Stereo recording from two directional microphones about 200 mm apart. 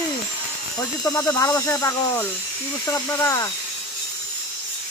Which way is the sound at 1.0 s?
20° left (ahead or behind).